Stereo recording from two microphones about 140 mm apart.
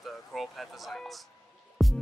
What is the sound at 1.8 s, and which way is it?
Music, centre (ahead or behind).